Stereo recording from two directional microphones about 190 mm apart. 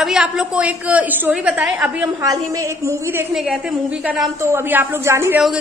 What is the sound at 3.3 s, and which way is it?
A woman's voice, centre (ahead or behind).